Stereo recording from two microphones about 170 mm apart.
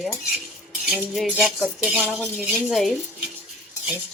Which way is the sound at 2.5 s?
5° right (ahead or behind).